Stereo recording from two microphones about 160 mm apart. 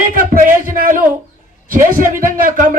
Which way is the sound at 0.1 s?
60° right (ahead or behind).